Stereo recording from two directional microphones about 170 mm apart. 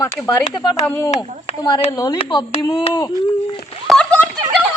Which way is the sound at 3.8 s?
5° left (ahead or behind).